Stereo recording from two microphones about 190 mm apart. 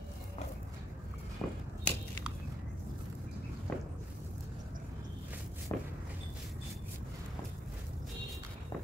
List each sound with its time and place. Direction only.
1.4 s walk: 10° left (ahead or behind)
1.9 s biting: 5° left (ahead or behind)
3.7 s walk: 5° left (ahead or behind)
5.7 s a sound: 10° left (ahead or behind)